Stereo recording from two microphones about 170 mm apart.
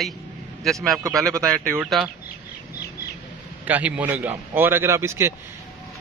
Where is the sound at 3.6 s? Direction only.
10° right (ahead or behind).